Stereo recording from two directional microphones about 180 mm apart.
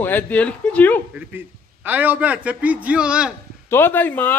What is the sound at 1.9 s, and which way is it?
A man's voice, 10° right (ahead or behind).